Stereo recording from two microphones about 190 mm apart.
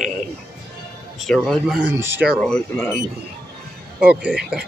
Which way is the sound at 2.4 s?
10° left (ahead or behind).